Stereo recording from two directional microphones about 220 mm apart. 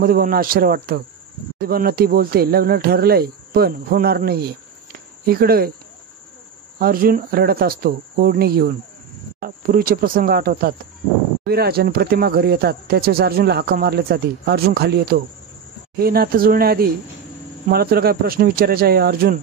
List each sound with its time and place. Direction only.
0.0 s speech: 40° right (ahead or behind)
6.8 s speech: 40° right (ahead or behind)